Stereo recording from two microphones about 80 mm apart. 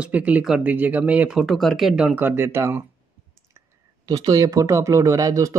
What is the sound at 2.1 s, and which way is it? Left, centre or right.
Speech, right.